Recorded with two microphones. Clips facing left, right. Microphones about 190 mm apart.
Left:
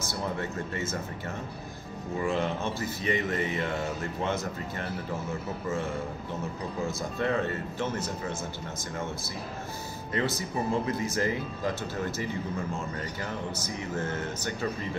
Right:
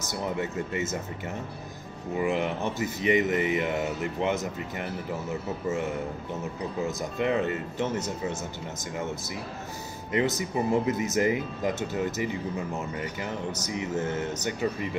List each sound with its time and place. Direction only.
0.1 s speech: 20° right (ahead or behind)
2.1 s speech: 20° right (ahead or behind)
7.0 s speech: 15° right (ahead or behind)
10.1 s speech: 20° right (ahead or behind)
13.7 s speech: 20° right (ahead or behind)